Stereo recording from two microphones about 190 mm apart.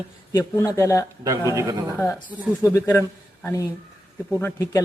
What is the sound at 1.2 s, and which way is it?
Speech, 15° right (ahead or behind).